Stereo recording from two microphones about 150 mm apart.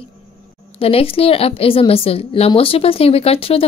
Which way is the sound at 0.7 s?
40° left (ahead or behind).